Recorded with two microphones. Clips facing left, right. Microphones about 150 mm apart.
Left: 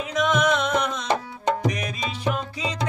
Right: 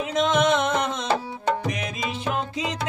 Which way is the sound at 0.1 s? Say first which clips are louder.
Right 1 dB; 25° right (ahead or behind).